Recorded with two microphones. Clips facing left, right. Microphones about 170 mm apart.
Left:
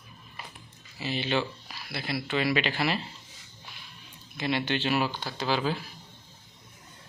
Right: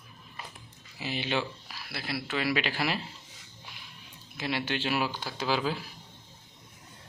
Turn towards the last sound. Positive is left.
turn(degrees=-5)  # may be behind; listen again after turning